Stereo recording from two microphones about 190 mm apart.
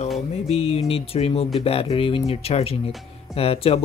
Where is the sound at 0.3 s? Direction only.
35° left (ahead or behind).